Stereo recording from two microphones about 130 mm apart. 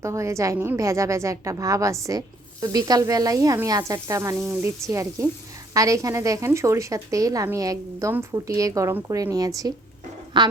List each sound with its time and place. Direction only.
0.0 s a woman's voice: 20° right (ahead or behind)